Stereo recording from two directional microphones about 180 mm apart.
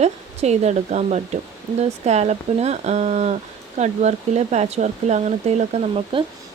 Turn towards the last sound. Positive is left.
turn(degrees=-30)  # may be behind; listen again after turning